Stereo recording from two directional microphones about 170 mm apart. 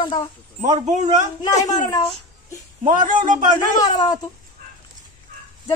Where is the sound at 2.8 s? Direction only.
50° right (ahead or behind).